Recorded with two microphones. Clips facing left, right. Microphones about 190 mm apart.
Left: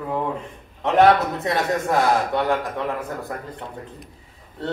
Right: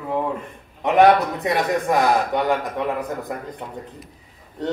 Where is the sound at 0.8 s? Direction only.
15° right (ahead or behind).